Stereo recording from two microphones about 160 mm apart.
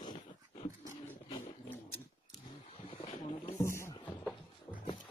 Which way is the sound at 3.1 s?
35° left (ahead or behind).